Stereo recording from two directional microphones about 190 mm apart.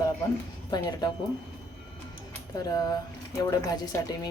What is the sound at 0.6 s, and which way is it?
Speech, 20° left (ahead or behind).